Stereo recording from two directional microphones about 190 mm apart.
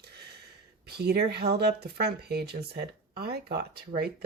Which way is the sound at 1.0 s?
60° right (ahead or behind).